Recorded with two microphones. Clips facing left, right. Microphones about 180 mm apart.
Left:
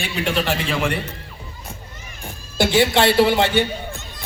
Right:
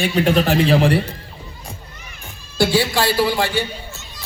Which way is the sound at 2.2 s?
20° left (ahead or behind).